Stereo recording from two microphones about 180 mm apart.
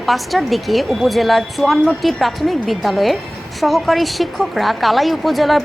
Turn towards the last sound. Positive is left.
turn(degrees=0)  # may be behind; listen again after turning